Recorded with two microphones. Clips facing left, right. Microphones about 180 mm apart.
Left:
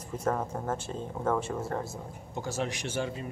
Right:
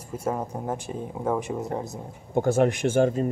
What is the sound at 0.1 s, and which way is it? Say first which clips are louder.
Speech: right 2 dB; 10° right (ahead or behind).